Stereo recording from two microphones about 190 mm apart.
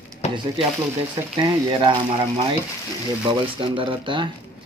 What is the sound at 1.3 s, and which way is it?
Speech, 25° right (ahead or behind).